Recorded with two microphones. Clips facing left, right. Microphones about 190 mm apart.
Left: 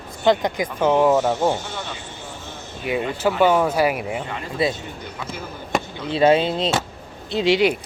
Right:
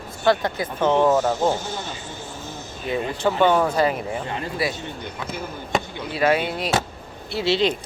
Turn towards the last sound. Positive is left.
turn(degrees=10)  # may be behind; listen again after turning